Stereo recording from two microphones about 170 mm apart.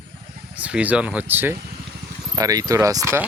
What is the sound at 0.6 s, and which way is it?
Speech, 10° right (ahead or behind).